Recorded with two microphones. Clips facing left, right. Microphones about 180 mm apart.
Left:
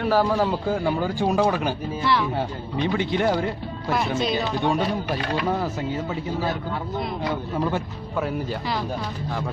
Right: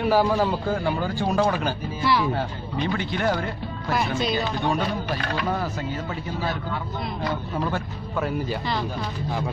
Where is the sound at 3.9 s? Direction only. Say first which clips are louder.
Left 1 dB; centre (ahead or behind).